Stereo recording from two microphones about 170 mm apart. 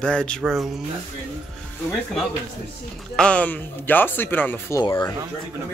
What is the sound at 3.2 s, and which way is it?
Speech, 5° left (ahead or behind).